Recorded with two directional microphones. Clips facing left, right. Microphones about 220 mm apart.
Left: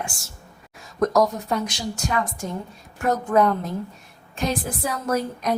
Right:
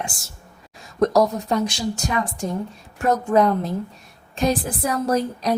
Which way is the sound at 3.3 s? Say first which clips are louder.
Right 1 dB; 35° right (ahead or behind).